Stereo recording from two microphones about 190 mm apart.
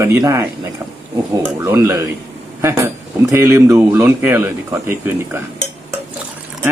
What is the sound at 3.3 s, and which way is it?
Speech, 15° right (ahead or behind).